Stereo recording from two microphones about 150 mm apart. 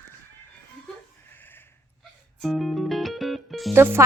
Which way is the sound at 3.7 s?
15° right (ahead or behind).